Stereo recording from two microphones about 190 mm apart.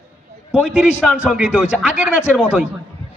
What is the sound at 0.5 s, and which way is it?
A man's voice, 5° right (ahead or behind).